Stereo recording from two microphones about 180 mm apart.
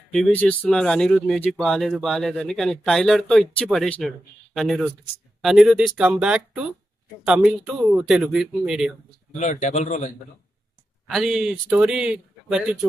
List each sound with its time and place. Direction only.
0.1 s speech: 5° left (ahead or behind)
9.3 s a man's voice: 40° left (ahead or behind)
11.1 s speech: centre (ahead or behind)